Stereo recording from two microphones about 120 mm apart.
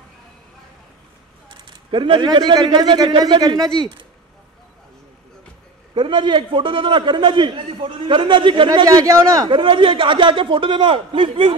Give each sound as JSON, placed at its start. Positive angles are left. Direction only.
{"t": 1.7, "sound": "speech", "side_deg": -45}
{"t": 5.9, "sound": "a man's voice", "side_deg": -40}
{"t": 9.5, "sound": "a man's voice", "side_deg": -45}